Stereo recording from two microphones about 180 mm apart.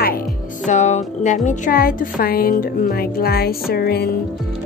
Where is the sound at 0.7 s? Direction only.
40° left (ahead or behind); by 4.1 s 60° left (ahead or behind).